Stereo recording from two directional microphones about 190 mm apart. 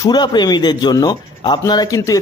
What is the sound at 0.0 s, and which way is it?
Speech, 20° left (ahead or behind).